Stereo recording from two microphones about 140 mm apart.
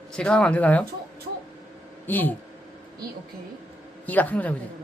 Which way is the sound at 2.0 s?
15° left (ahead or behind).